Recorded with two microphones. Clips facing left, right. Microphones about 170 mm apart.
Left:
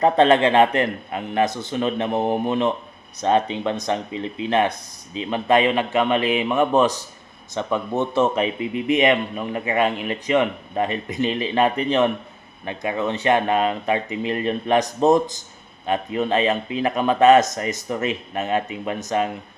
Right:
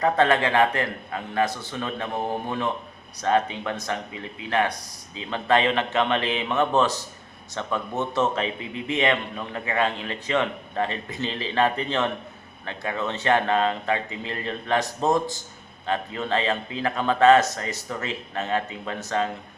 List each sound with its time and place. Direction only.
0.0 s a man's voice: 20° left (ahead or behind)